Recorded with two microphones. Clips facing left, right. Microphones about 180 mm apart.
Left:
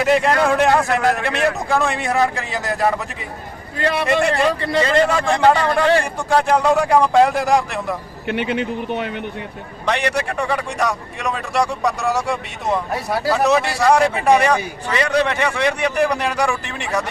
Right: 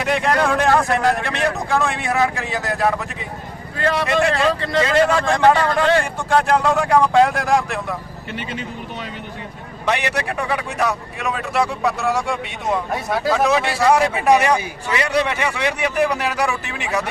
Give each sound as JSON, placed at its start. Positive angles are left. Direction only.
{"t": 0.0, "sound": "speech", "side_deg": 0}
{"t": 3.8, "sound": "speech", "side_deg": 15}
{"t": 4.0, "sound": "speech", "side_deg": 0}
{"t": 5.0, "sound": "speech", "side_deg": 10}
{"t": 6.1, "sound": "speech", "side_deg": 0}
{"t": 8.3, "sound": "speech", "side_deg": 60}
{"t": 9.8, "sound": "speech", "side_deg": -5}